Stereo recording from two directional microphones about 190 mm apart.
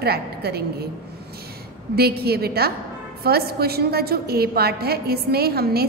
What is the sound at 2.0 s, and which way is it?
A woman's voice, 55° right (ahead or behind).